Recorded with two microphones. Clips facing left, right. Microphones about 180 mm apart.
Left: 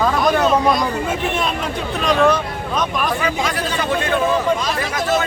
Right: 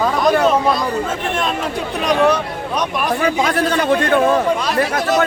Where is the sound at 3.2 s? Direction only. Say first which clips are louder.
Right 5 dB; 50° right (ahead or behind).